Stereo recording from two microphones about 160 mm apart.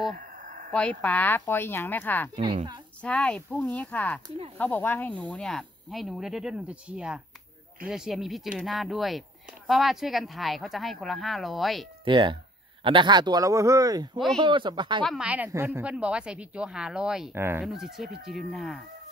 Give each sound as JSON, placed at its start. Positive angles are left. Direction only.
{"t": 0.2, "sound": "a sound", "side_deg": -55}
{"t": 0.7, "sound": "speech", "side_deg": 10}
{"t": 12.0, "sound": "speech", "side_deg": -30}
{"t": 15.0, "sound": "a woman's voice", "side_deg": -5}